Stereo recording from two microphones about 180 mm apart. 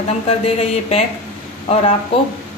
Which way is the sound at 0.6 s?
35° left (ahead or behind).